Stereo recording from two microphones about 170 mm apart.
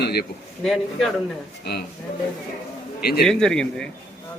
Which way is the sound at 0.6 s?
Centre (ahead or behind).